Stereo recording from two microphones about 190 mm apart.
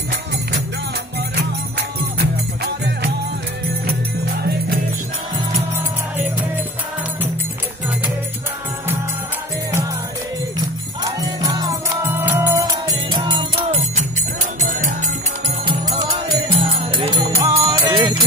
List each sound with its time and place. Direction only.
4.4 s music: 55° right (ahead or behind)
11.1 s music: 20° right (ahead or behind)
13.1 s music: 25° right (ahead or behind)
14.6 s music: 40° right (ahead or behind)
16.4 s music: 25° right (ahead or behind)
17.4 s jingle bell: 20° right (ahead or behind)